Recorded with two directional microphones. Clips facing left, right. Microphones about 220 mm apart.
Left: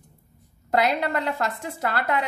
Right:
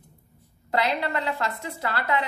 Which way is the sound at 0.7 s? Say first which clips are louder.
Left 3 dB; 45° left (ahead or behind).